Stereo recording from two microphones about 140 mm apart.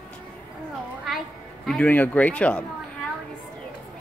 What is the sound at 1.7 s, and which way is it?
Speech, 10° left (ahead or behind).